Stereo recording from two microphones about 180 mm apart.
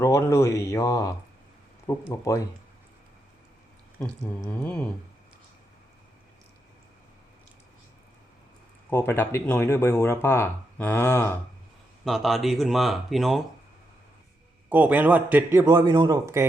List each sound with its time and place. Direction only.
0.0 s speech: 15° left (ahead or behind)
4.0 s speech: 10° left (ahead or behind)
8.9 s speech: 10° left (ahead or behind)
12.0 s speech: centre (ahead or behind)
14.7 s a man's voice: 10° right (ahead or behind)